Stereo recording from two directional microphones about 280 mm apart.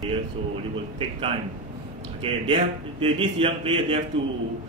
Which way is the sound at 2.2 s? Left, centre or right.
Centre.